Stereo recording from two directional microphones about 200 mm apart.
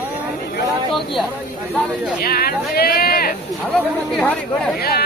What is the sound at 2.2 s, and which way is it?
Speech, 50° left (ahead or behind).